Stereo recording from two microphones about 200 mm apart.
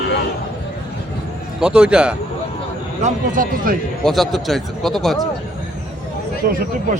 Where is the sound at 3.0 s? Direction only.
40° right (ahead or behind).